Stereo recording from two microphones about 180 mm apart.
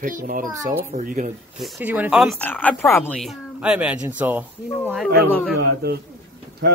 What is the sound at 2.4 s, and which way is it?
Speech, 10° left (ahead or behind).